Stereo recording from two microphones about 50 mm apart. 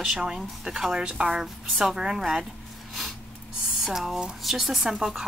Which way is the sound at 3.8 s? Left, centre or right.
Centre.